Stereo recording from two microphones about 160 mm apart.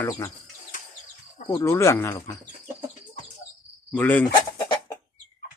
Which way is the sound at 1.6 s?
15° left (ahead or behind).